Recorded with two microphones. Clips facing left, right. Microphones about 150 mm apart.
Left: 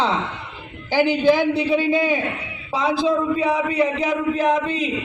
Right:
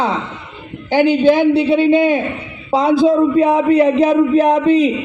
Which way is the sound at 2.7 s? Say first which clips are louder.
Right 8 dB; 40° right (ahead or behind).